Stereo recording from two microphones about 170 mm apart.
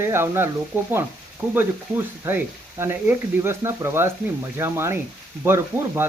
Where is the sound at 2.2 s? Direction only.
15° right (ahead or behind).